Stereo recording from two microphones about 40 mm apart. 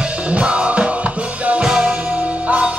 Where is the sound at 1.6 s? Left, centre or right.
Right.